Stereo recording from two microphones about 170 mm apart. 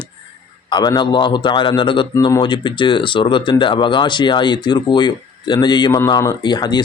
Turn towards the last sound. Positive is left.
turn(degrees=25)  # may be behind; listen again after turning